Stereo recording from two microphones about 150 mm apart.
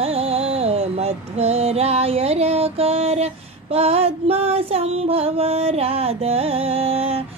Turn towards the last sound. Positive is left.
turn(degrees=-40)  # may be behind; listen again after turning